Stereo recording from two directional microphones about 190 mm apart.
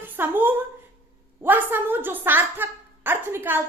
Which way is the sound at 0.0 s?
10° right (ahead or behind).